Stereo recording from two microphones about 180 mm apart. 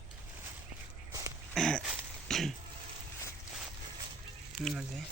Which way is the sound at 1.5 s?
5° left (ahead or behind).